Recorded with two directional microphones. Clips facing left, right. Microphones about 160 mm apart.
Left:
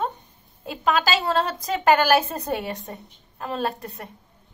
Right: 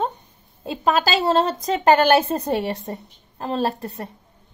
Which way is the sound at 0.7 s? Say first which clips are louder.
Right 2 dB; 35° right (ahead or behind).